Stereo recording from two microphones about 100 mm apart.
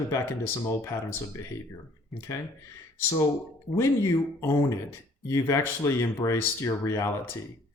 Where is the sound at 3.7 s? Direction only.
30° left (ahead or behind).